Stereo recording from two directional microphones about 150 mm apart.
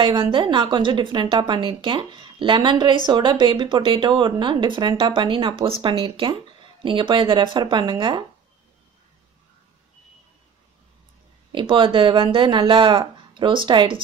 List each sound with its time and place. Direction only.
0.0 s speech: 35° right (ahead or behind)
11.5 s speech: 35° right (ahead or behind)